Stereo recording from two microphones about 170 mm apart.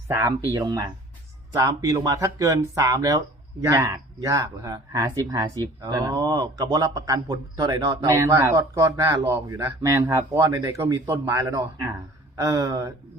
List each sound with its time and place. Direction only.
0.1 s speech: 15° right (ahead or behind)